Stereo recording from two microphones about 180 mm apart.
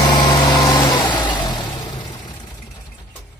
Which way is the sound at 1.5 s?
25° left (ahead or behind).